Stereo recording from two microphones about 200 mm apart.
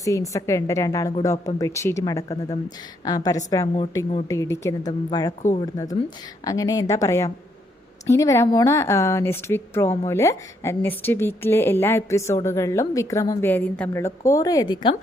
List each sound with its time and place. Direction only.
0.0 s a woman's voice: 15° left (ahead or behind)
5.4 s speech: 40° left (ahead or behind)
5.7 s a woman's voice: 20° left (ahead or behind)